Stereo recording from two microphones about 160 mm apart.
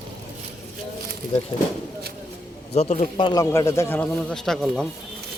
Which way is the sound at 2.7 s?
45° left (ahead or behind).